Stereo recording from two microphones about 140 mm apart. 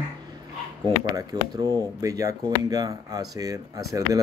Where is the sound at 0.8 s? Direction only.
30° right (ahead or behind).